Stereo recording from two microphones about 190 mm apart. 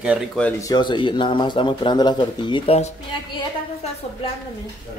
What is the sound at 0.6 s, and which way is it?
Speech, 25° left (ahead or behind).